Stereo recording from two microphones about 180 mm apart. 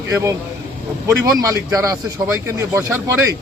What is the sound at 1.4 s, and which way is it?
Speech, 15° right (ahead or behind).